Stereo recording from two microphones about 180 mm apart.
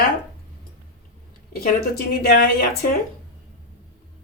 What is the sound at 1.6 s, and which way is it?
Speech, 55° left (ahead or behind).